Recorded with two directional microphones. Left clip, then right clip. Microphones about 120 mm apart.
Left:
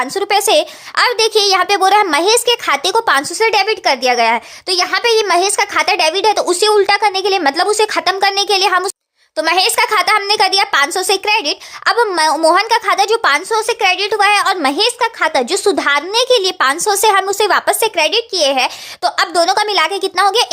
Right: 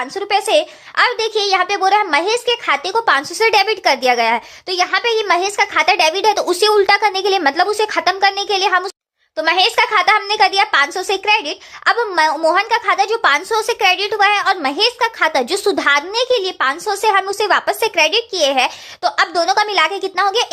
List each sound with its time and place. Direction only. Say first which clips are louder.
0.0 s a child's voice: left 3 dB; 40° left (ahead or behind)
3.3 s speech: left 1 dB; 20° left (ahead or behind)
7.5 s speech: left 2 dB; 30° left (ahead or behind)
13.5 s speech: left 1 dB; 15° left (ahead or behind)
16.2 s speech: left 4 dB; 35° left (ahead or behind)